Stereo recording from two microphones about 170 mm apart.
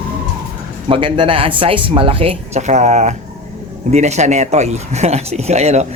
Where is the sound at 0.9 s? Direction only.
30° right (ahead or behind).